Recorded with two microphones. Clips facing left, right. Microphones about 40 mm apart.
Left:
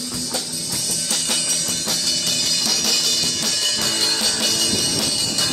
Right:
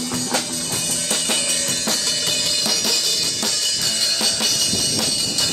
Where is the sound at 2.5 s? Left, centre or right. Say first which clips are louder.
Right 1 dB; centre.